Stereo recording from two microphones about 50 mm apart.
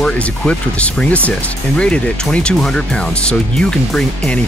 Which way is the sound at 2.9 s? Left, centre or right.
Centre.